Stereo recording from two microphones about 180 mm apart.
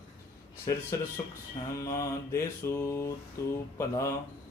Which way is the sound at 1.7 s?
20° left (ahead or behind).